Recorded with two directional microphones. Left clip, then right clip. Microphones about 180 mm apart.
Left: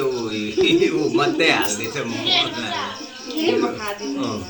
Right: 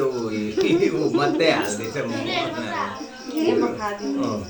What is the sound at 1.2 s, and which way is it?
Speech, 10° left (ahead or behind).